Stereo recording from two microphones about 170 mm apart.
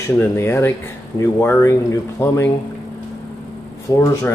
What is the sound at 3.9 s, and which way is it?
Speech, 20° left (ahead or behind).